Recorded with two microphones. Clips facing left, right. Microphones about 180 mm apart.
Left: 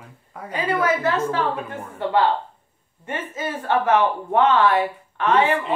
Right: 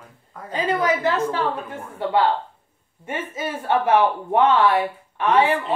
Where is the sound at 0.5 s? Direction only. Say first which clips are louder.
Even; 20° right (ahead or behind).